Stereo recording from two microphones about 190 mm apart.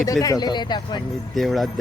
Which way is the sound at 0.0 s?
20° left (ahead or behind).